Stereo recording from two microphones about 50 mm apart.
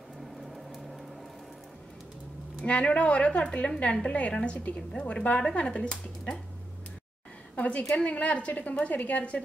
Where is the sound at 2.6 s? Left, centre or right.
Left.